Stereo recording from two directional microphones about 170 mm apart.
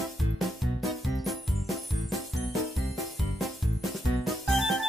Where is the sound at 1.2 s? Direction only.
Centre (ahead or behind).